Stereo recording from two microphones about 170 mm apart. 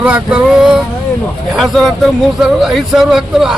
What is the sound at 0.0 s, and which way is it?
Speech, 5° right (ahead or behind).